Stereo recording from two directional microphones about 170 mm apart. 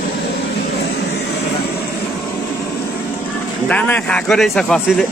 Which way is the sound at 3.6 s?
10° left (ahead or behind).